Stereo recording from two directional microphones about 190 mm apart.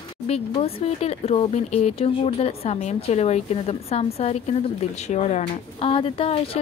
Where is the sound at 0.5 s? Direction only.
30° left (ahead or behind).